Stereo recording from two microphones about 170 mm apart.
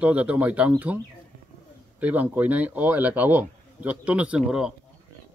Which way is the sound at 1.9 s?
10° right (ahead or behind).